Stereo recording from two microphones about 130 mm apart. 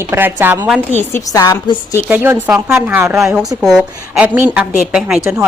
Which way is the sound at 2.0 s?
15° right (ahead or behind).